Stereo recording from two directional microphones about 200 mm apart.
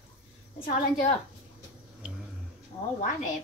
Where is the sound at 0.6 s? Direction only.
45° left (ahead or behind).